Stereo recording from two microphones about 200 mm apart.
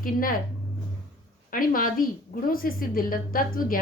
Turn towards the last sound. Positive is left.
turn(degrees=45)  # may be behind; listen again after turning